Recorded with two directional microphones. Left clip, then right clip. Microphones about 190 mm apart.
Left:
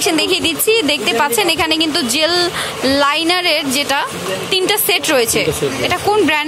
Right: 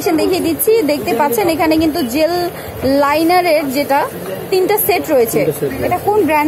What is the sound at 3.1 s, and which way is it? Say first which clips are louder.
Speech: right 3 dB; 5° right (ahead or behind).